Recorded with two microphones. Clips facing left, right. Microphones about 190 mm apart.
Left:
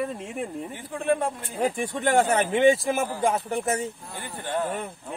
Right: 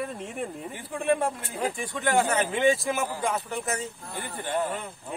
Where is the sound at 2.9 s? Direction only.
55° left (ahead or behind).